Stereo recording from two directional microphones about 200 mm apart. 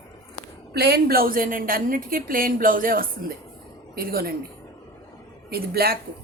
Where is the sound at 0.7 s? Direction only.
55° right (ahead or behind).